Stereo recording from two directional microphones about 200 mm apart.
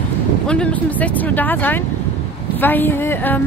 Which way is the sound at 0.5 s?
5° left (ahead or behind).